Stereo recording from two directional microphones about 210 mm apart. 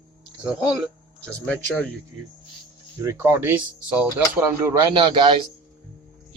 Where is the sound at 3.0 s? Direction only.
10° right (ahead or behind).